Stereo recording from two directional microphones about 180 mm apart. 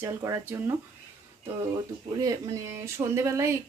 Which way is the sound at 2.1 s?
20° right (ahead or behind).